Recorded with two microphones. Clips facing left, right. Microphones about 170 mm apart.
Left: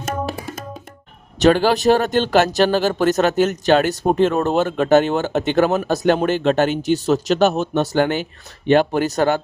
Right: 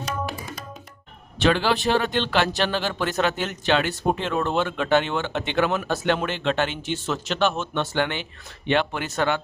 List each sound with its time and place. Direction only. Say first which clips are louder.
1.4 s speech: left 6 dB; 45° left (ahead or behind)